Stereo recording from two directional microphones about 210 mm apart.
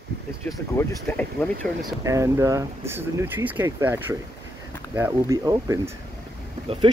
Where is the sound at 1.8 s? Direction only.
15° right (ahead or behind).